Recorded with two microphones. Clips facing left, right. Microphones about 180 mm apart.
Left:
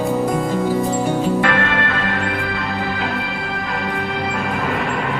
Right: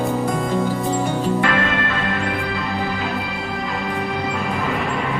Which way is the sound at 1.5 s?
55° left (ahead or behind).